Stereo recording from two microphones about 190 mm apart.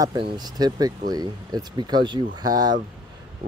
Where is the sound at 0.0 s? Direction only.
20° right (ahead or behind).